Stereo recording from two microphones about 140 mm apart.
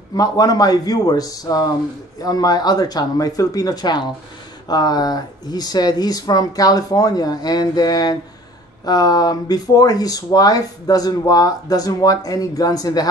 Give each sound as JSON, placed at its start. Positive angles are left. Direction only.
{"t": 0.1, "sound": "speech", "side_deg": 25}